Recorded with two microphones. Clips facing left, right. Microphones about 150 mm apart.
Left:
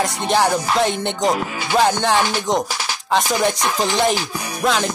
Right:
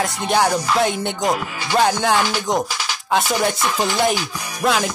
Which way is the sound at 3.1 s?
5° right (ahead or behind).